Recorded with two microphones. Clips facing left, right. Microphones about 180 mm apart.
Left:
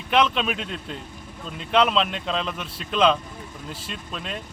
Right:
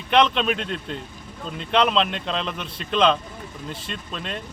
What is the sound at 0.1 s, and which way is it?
Speech, 5° left (ahead or behind).